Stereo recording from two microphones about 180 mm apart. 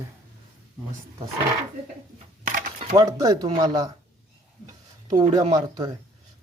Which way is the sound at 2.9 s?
25° right (ahead or behind).